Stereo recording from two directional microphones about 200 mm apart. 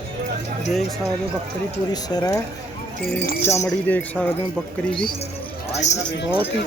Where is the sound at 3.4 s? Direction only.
10° left (ahead or behind).